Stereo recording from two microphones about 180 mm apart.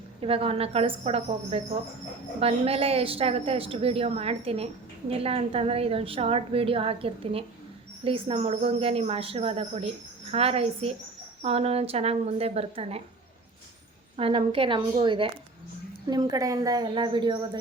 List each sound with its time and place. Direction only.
0.2 s a woman's voice: 30° right (ahead or behind)
14.2 s a woman's voice: 30° right (ahead or behind)